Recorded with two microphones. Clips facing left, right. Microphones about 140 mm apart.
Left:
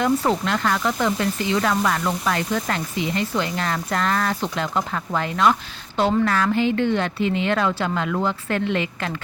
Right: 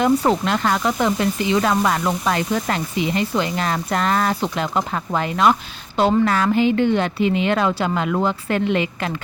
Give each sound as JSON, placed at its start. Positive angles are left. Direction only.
{"t": 0.0, "sound": "speech", "side_deg": -20}